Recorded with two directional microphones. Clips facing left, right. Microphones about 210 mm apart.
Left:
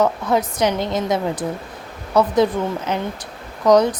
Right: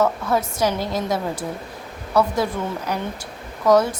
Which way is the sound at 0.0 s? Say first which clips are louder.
Left 2 dB; 15° left (ahead or behind).